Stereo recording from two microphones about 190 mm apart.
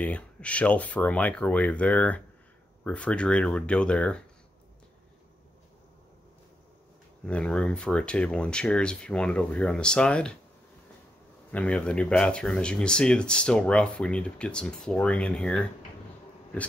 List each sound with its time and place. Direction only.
0.0 s speech: 5° left (ahead or behind)
7.2 s speech: 5° left (ahead or behind)
11.5 s speech: 5° left (ahead or behind)